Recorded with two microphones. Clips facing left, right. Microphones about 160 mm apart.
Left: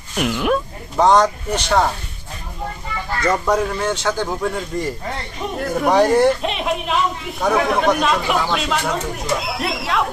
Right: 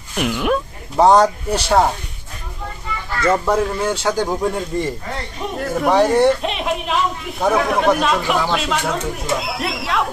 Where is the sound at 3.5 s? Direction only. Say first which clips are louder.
Right 1 dB; 5° right (ahead or behind).